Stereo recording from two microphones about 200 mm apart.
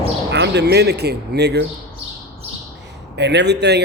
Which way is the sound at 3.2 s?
60° right (ahead or behind).